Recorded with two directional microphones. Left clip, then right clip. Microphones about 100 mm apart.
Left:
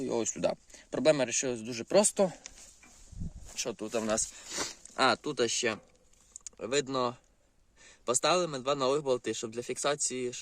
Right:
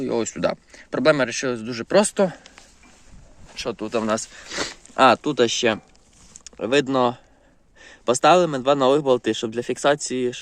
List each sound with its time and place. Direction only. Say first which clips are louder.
0.0 s speech: right 8 dB; 20° left (ahead or behind)
3.5 s speech: right 8 dB; 15° left (ahead or behind)
3.8 s speech: right 8 dB; centre (ahead or behind)
4.9 s a man's voice: right 12 dB; 30° right (ahead or behind)